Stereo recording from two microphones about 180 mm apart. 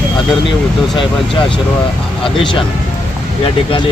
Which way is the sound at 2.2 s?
30° left (ahead or behind).